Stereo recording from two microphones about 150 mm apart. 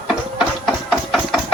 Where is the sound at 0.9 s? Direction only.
Centre (ahead or behind).